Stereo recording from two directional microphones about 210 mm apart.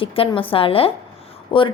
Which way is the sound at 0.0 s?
25° left (ahead or behind).